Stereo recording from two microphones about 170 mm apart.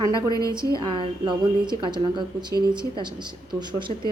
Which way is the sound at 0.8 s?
30° right (ahead or behind).